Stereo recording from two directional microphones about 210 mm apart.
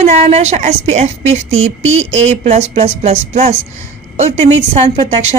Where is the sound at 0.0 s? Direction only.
30° right (ahead or behind).